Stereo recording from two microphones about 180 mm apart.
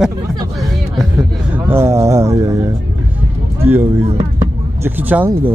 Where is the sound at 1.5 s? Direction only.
15° right (ahead or behind).